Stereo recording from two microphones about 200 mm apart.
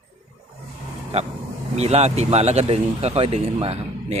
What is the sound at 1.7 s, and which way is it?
Speech, 30° right (ahead or behind).